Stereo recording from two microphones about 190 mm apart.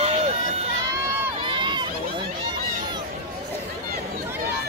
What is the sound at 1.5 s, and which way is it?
Crowd, 25° right (ahead or behind).